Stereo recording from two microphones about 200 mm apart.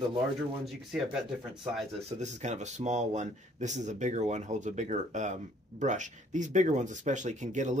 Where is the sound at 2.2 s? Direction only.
35° right (ahead or behind).